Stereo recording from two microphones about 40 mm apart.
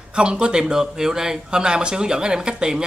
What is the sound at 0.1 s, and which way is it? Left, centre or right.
Speech, right.